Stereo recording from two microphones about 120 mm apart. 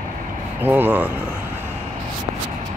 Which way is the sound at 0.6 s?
15° right (ahead or behind).